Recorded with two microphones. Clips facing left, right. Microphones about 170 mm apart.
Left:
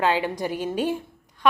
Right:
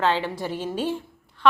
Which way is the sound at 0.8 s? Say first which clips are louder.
Left 2 dB; 15° left (ahead or behind).